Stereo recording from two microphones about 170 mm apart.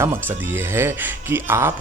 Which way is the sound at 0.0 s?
15° right (ahead or behind).